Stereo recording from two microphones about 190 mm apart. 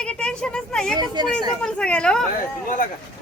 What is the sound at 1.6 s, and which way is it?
Speech, 5° left (ahead or behind).